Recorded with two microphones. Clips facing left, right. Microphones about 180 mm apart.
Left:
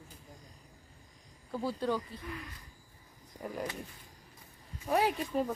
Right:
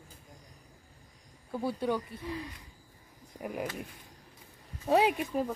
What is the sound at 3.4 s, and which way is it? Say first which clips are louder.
Speech: right 2 dB; 10° right (ahead or behind).